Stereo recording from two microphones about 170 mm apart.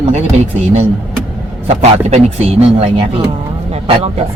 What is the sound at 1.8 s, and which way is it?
Speech, 40° right (ahead or behind).